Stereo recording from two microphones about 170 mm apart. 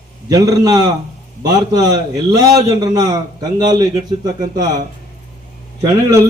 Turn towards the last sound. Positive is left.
turn(degrees=-15)  # may be behind; listen again after turning